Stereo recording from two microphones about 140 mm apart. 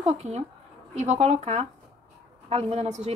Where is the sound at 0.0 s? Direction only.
50° right (ahead or behind).